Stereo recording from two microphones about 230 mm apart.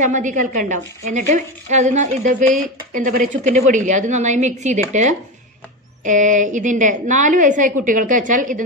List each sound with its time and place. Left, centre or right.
0.0 s a woman's voice: right